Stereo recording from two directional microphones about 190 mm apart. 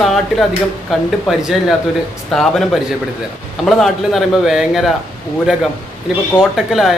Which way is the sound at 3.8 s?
Centre (ahead or behind).